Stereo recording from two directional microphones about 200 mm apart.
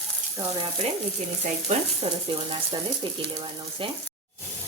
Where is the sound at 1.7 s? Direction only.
35° right (ahead or behind).